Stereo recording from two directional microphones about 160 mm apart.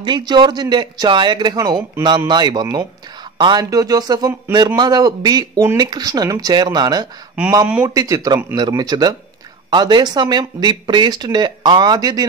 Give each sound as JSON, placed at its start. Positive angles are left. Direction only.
{"t": 0.0, "sound": "speech", "side_deg": -30}